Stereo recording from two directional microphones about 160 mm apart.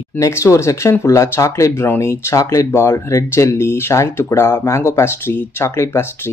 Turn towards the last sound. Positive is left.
turn(degrees=15)  # may be behind; listen again after turning